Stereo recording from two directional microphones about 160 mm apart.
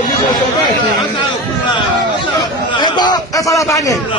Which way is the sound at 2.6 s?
30° left (ahead or behind).